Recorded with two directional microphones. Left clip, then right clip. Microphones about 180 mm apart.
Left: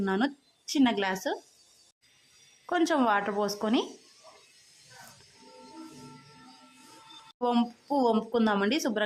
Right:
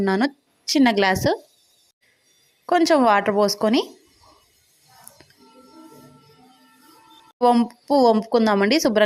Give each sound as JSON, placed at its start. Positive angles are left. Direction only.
{"t": 0.0, "sound": "a woman's voice", "side_deg": -30}
{"t": 2.6, "sound": "a woman's voice", "side_deg": -25}
{"t": 7.3, "sound": "a woman's voice", "side_deg": -25}